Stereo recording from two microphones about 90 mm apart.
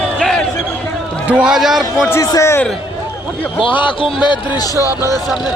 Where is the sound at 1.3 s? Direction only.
15° right (ahead or behind).